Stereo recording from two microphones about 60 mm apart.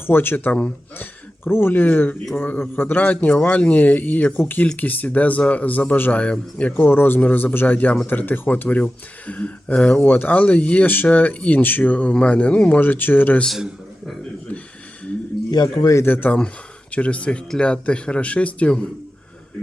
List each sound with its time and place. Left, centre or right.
0.0 s a man's voice: left
6.7 s a man's voice: left
15.7 s a man's voice: left
16.0 s a man's voice: left
16.9 s speech: left